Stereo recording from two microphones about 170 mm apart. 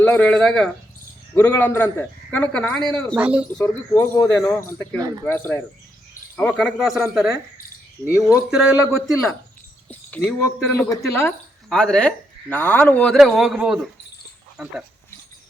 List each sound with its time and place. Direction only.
0.0 s speech: 10° left (ahead or behind)
3.2 s speech: 5° right (ahead or behind)
3.6 s speech: 15° left (ahead or behind)
4.9 s speech: 20° right (ahead or behind)
5.2 s speech: 10° left (ahead or behind)
11.7 s speech: 5° left (ahead or behind)